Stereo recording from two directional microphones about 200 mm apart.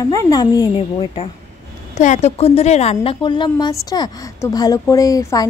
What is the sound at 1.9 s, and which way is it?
A woman's voice, 35° left (ahead or behind).